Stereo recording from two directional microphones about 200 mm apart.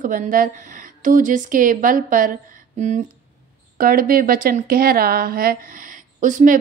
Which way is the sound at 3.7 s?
45° right (ahead or behind).